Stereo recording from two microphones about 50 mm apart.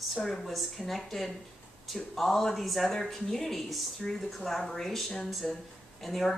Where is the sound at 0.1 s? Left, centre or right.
Centre.